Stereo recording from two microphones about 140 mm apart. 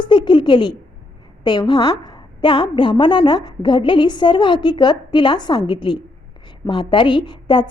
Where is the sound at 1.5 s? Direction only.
35° left (ahead or behind).